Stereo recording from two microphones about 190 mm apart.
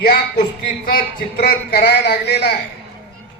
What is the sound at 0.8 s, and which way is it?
A man's voice, 50° left (ahead or behind).